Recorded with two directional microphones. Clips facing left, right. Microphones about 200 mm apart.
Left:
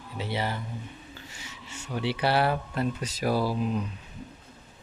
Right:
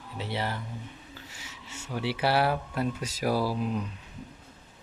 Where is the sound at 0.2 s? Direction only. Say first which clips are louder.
Left 2 dB; centre (ahead or behind).